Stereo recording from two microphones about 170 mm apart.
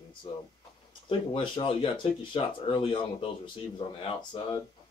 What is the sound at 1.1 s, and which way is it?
Speech, 30° left (ahead or behind).